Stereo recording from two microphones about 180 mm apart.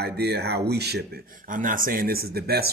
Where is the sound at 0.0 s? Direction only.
65° right (ahead or behind).